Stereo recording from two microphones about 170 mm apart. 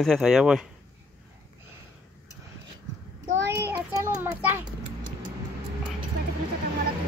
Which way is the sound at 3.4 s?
15° right (ahead or behind).